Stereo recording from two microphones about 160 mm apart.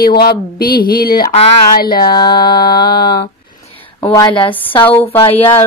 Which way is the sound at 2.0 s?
25° left (ahead or behind).